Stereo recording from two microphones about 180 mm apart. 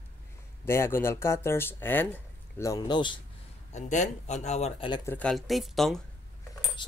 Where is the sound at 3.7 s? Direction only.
40° left (ahead or behind).